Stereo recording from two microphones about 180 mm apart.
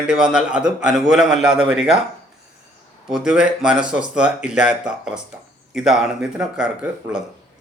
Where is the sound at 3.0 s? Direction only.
5° right (ahead or behind).